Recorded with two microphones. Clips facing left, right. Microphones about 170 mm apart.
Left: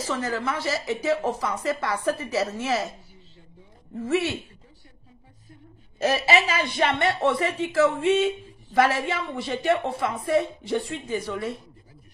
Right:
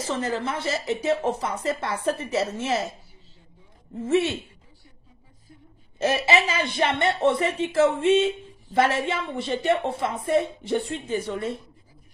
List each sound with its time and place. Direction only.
0.0 s a woman's voice: 25° right (ahead or behind)
3.9 s a woman's voice: 25° right (ahead or behind)
5.9 s a woman's voice: 25° right (ahead or behind)